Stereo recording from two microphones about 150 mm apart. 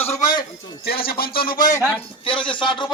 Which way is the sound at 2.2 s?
35° left (ahead or behind).